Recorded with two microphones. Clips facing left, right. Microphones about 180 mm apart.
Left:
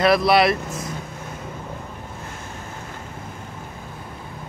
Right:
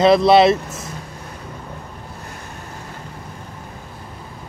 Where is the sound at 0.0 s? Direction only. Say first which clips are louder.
Right 5 dB; 25° right (ahead or behind).